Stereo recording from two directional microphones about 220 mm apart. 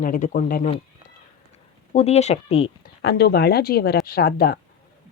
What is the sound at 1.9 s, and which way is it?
Speech, 30° left (ahead or behind).